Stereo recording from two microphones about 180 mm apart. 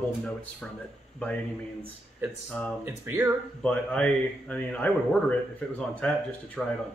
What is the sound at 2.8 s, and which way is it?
Speech, 15° right (ahead or behind).